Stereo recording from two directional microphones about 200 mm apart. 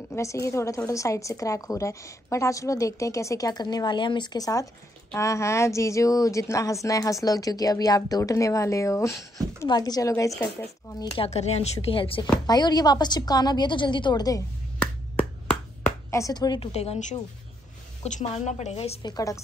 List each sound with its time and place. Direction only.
0.1 s a woman's voice: 15° left (ahead or behind)
11.1 s a woman's voice: 30° left (ahead or behind)
16.1 s a woman's voice: 15° left (ahead or behind)
16.7 s a woman's voice: 30° left (ahead or behind)
19.1 s a woman's voice: 15° left (ahead or behind)